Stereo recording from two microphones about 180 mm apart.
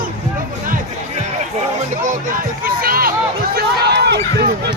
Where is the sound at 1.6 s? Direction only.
40° right (ahead or behind).